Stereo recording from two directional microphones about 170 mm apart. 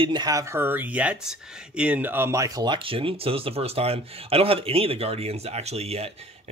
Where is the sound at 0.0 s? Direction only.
25° right (ahead or behind).